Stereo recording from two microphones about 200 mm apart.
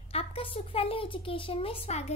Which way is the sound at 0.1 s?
30° left (ahead or behind).